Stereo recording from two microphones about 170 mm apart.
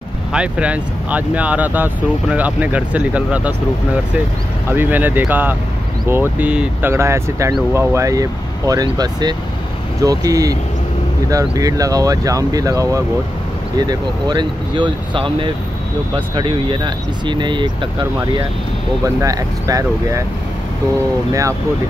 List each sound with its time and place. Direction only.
0.3 s speech: 5° right (ahead or behind)
4.6 s speech: 10° right (ahead or behind); by 17.6 s 25° right (ahead or behind)
19.0 s speech: 20° right (ahead or behind)
21.3 s speech: 20° right (ahead or behind)